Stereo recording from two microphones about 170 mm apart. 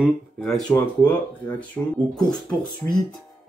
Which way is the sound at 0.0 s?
Centre (ahead or behind).